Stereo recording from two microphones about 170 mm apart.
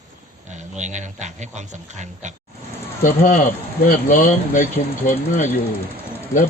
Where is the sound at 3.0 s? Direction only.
55° left (ahead or behind).